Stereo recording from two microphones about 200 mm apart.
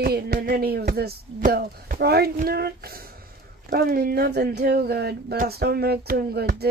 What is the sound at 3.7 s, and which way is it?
Speech, 50° right (ahead or behind).